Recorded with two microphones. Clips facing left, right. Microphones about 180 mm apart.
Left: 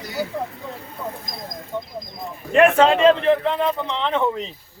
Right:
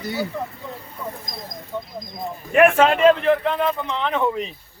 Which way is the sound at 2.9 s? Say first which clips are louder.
Even; 25° left (ahead or behind).